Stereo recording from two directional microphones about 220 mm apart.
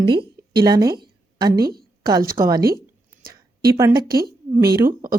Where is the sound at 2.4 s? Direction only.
15° right (ahead or behind).